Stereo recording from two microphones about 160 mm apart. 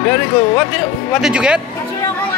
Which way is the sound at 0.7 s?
5° right (ahead or behind).